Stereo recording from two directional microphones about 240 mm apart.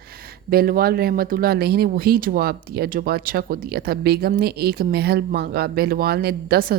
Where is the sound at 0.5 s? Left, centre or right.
Right.